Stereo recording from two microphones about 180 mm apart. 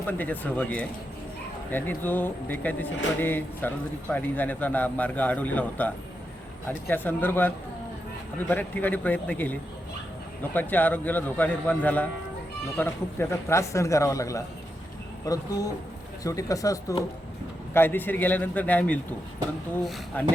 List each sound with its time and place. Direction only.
0.1 s speech: 10° left (ahead or behind)
20.1 s speech: 10° left (ahead or behind)